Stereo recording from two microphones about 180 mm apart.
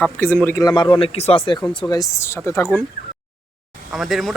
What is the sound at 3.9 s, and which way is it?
Speech, centre (ahead or behind).